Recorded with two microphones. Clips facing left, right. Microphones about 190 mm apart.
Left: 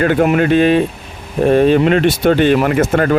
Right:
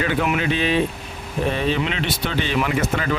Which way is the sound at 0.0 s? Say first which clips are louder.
Left 9 dB; 50° left (ahead or behind).